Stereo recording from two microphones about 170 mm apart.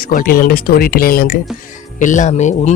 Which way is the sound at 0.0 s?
55° left (ahead or behind).